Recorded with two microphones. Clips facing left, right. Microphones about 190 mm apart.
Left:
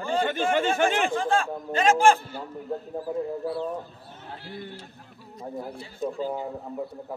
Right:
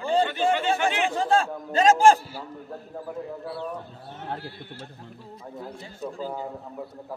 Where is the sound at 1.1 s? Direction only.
35° right (ahead or behind).